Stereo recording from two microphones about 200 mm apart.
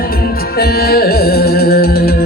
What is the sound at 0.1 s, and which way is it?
Music, 50° left (ahead or behind).